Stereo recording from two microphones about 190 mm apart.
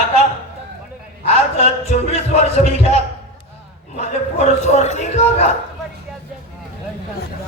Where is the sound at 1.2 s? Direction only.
35° left (ahead or behind).